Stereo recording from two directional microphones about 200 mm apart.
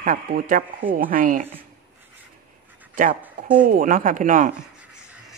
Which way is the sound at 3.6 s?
40° right (ahead or behind).